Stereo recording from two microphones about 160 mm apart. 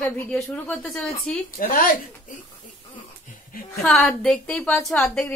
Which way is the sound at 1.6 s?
65° left (ahead or behind).